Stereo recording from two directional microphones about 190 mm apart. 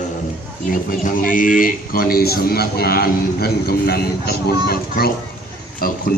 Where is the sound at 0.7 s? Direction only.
45° left (ahead or behind).